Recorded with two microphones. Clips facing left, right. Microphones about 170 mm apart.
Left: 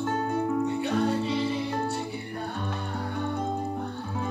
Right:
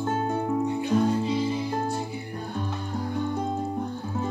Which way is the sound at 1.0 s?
65° left (ahead or behind).